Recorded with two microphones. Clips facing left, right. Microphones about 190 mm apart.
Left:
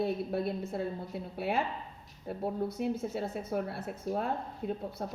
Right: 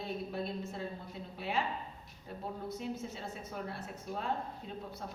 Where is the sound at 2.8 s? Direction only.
60° left (ahead or behind).